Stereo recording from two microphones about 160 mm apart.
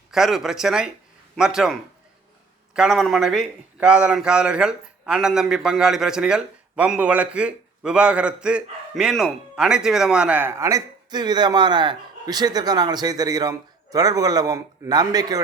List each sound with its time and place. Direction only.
0.1 s a man's voice: centre (ahead or behind); by 15.4 s 25° right (ahead or behind)